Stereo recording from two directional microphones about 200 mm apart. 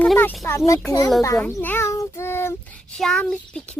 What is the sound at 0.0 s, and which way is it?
A child's voice, 10° left (ahead or behind).